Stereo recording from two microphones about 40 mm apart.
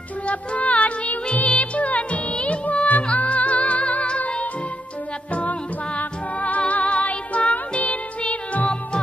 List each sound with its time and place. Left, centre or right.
0.3 s music: left
5.3 s music: left